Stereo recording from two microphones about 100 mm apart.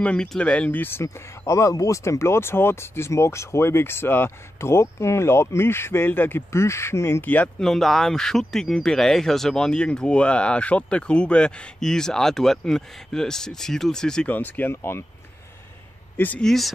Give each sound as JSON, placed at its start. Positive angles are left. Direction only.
{"t": 0.0, "sound": "speech", "side_deg": 10}
{"t": 1.0, "sound": "speech", "side_deg": 30}
{"t": 14.3, "sound": "speech", "side_deg": 15}
{"t": 16.2, "sound": "speech", "side_deg": 15}
{"t": 16.4, "sound": "speech", "side_deg": 0}